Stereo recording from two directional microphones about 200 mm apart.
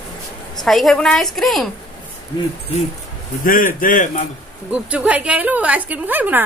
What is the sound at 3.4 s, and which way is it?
Speech, 45° left (ahead or behind).